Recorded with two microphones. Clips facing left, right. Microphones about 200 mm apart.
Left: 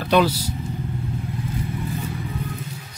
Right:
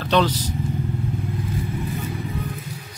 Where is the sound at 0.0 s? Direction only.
10° left (ahead or behind).